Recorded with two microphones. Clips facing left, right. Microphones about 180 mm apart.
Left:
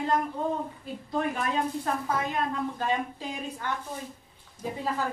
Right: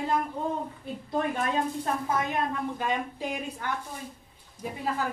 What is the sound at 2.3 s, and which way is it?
A woman's voice, 15° right (ahead or behind).